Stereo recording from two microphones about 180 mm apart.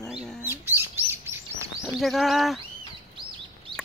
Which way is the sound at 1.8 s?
Centre (ahead or behind).